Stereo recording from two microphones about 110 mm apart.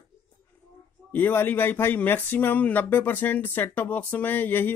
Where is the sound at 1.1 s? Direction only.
20° left (ahead or behind).